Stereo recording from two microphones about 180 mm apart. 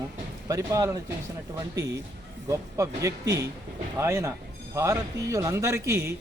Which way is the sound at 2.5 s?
15° right (ahead or behind).